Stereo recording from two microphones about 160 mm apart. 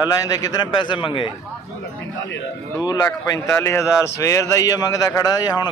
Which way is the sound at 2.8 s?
20° left (ahead or behind).